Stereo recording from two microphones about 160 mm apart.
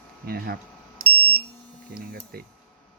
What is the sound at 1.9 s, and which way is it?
Speech, 80° right.